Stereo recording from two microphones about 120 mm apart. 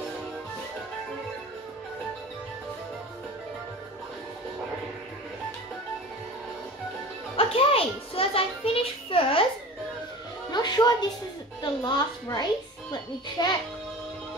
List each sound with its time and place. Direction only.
7.3 s music: 50° left (ahead or behind)
10.5 s music: 35° left (ahead or behind)
11.6 s a woman's voice: 40° left (ahead or behind)